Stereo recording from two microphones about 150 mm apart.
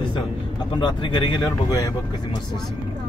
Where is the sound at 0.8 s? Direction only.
30° left (ahead or behind).